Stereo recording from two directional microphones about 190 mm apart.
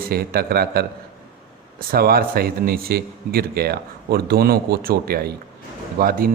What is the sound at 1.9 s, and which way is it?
Speech, 50° right (ahead or behind).